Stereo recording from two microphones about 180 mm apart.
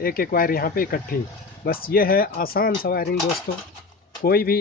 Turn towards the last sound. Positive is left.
turn(degrees=55)  # may be behind; listen again after turning